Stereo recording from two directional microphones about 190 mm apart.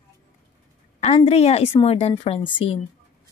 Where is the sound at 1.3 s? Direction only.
35° left (ahead or behind).